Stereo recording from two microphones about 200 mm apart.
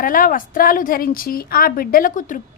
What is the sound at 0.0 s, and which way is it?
A woman's voice, 45° left (ahead or behind).